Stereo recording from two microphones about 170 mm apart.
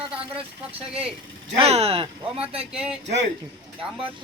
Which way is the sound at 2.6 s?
5° right (ahead or behind).